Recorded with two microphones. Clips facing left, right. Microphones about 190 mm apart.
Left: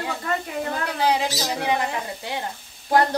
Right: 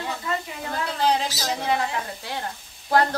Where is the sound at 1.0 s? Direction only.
10° left (ahead or behind).